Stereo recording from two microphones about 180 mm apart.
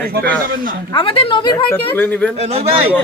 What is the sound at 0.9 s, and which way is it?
A woman's voice, 30° left (ahead or behind).